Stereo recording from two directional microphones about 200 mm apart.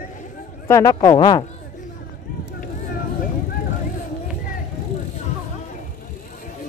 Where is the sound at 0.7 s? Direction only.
15° left (ahead or behind).